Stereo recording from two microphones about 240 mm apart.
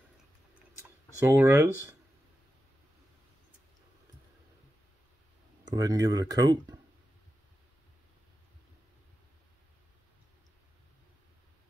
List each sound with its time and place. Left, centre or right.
1.2 s speech: centre
5.8 s speech: centre